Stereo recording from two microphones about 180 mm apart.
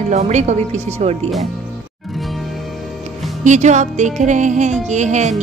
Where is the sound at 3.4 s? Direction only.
40° right (ahead or behind).